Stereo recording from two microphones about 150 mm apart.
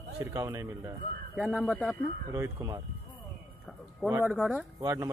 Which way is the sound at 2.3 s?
20° right (ahead or behind).